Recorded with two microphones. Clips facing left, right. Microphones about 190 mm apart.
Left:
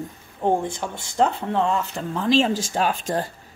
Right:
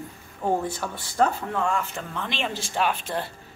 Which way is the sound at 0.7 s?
20° left (ahead or behind).